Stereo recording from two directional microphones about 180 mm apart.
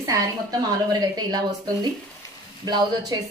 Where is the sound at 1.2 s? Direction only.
25° right (ahead or behind).